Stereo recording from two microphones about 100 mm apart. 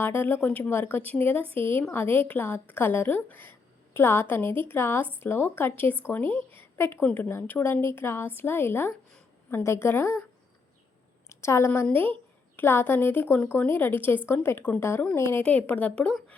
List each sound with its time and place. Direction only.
0.0 s speech: 20° left (ahead or behind)
11.3 s a woman's voice: 30° left (ahead or behind); by 16.2 s 10° left (ahead or behind)